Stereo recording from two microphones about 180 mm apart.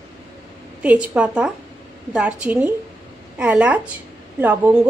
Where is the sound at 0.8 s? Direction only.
5° right (ahead or behind).